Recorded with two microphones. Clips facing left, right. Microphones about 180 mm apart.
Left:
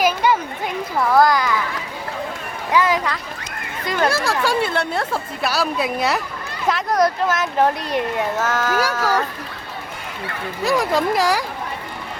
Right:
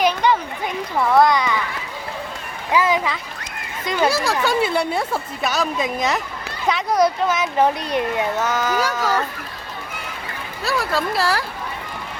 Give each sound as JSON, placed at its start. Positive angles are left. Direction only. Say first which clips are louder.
{"t": 0.0, "sound": "a sound", "louder": "even", "side_deg": 5}
{"t": 0.9, "sound": "speech", "louder": "even", "side_deg": 0}
{"t": 2.7, "sound": "speech", "louder": "even", "side_deg": -5}
{"t": 10.6, "sound": "speech", "louder": "left 4 dB", "side_deg": 20}